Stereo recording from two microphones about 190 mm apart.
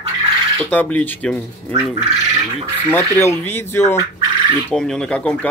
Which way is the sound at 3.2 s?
10° left (ahead or behind).